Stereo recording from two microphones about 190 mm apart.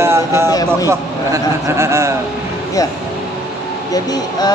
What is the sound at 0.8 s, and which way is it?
A man's voice, 15° right (ahead or behind).